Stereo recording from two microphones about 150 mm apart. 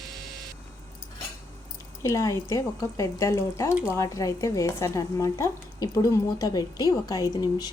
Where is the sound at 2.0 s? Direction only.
20° left (ahead or behind).